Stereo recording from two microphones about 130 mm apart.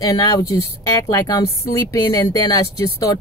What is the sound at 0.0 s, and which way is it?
Speech, 30° left (ahead or behind).